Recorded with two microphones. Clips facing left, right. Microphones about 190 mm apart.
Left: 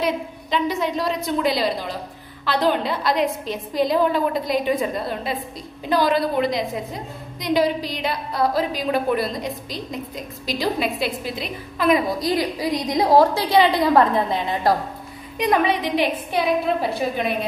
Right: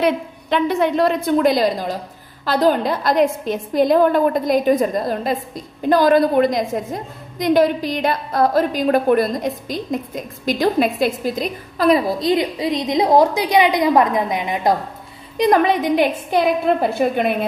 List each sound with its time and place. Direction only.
0.0 s a woman's voice: 60° right (ahead or behind); by 14.8 s 20° right (ahead or behind)
15.3 s a woman's voice: 40° right (ahead or behind); by 17.4 s 55° right (ahead or behind)